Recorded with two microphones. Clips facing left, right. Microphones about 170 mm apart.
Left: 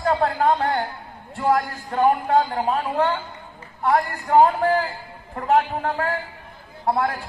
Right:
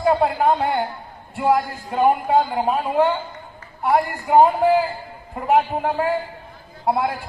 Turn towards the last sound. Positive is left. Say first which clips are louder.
# right 1 dB
turn(degrees=-15)  # may be behind; listen again after turning